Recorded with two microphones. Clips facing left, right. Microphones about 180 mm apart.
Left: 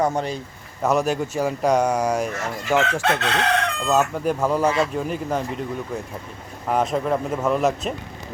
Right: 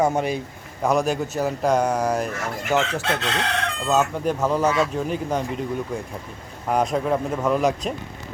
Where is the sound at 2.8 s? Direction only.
60° left (ahead or behind).